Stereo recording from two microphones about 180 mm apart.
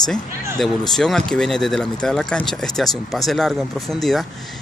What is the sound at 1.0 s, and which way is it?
Speech, centre (ahead or behind).